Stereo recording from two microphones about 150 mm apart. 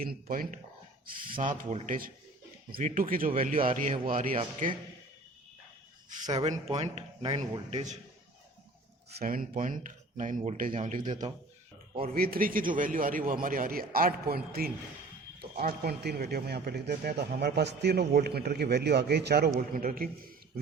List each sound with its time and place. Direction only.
0.0 s a man's voice: 75° right (ahead or behind); by 4.7 s 60° right (ahead or behind)
6.3 s speech: 45° right (ahead or behind)
9.2 s speech: 65° right (ahead or behind)
11.1 s speech: 30° right (ahead or behind)
12.1 s a man's voice: 80° right